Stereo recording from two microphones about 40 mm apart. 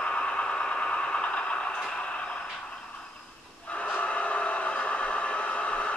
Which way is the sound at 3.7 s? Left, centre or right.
Left.